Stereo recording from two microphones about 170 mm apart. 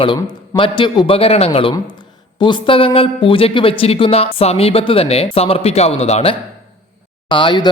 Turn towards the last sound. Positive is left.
turn(degrees=30)  # may be behind; listen again after turning